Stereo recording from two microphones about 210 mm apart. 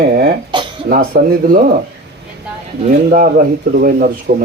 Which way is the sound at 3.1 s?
40° right (ahead or behind).